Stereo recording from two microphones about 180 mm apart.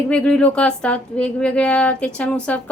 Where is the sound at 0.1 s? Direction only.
5° left (ahead or behind).